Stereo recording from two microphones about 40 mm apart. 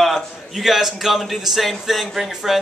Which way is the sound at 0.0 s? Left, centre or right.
Centre.